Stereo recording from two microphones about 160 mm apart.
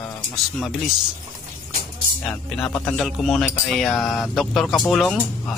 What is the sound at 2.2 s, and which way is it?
Speech, 5° left (ahead or behind).